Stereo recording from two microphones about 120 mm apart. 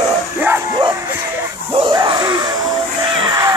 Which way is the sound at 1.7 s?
40° right (ahead or behind).